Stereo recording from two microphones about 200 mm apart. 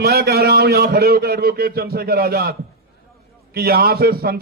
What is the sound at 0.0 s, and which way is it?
A man's voice, 50° right (ahead or behind).